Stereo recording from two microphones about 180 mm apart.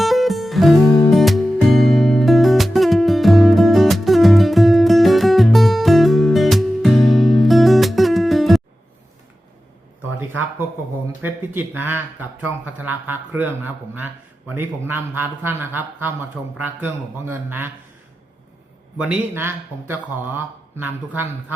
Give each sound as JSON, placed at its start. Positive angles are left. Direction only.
{"t": 0.0, "sound": "music", "side_deg": 0}
{"t": 11.2, "sound": "speech", "side_deg": -10}
{"t": 18.9, "sound": "speech", "side_deg": -5}